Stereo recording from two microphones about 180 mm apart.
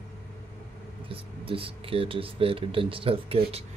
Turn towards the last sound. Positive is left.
turn(degrees=-35)  # may be behind; listen again after turning